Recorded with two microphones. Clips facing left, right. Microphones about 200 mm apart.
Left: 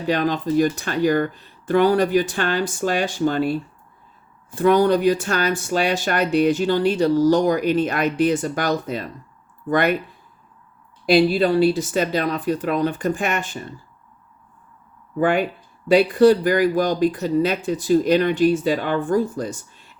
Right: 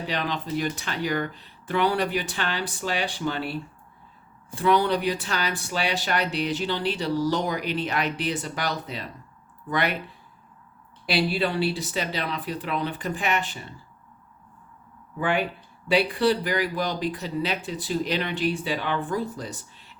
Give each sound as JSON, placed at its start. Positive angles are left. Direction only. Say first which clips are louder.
{"t": 0.1, "sound": "speech", "louder": "left 10 dB", "side_deg": 45}
{"t": 11.0, "sound": "speech", "louder": "left 9 dB", "side_deg": 45}
{"t": 15.2, "sound": "speech", "louder": "left 6 dB", "side_deg": 45}